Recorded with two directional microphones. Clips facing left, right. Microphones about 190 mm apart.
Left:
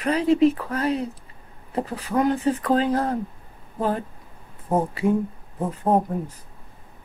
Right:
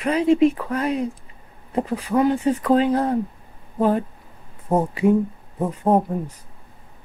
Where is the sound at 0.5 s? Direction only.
10° right (ahead or behind).